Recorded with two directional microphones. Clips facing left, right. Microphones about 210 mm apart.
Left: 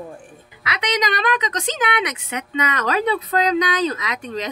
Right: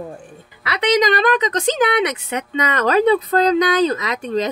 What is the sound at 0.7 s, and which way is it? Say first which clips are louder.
A woman's voice: right 7 dB; 35° right (ahead or behind).